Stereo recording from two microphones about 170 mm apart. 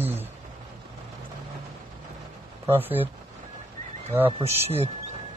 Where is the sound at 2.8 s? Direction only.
10° right (ahead or behind).